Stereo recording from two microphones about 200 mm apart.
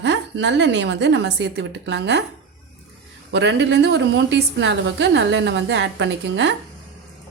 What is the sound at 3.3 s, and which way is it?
Speech, 60° right (ahead or behind).